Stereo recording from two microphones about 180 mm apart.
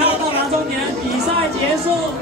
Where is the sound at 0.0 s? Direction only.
30° left (ahead or behind).